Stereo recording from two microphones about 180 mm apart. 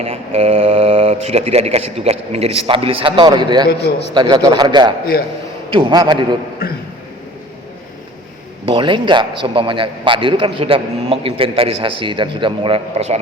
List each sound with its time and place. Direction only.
0.0 s a man's voice: 35° right (ahead or behind)
6.6 s speech: 60° left (ahead or behind)
8.6 s a man's voice: 30° right (ahead or behind)